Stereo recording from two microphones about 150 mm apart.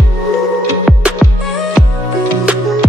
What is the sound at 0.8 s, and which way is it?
Music, centre (ahead or behind).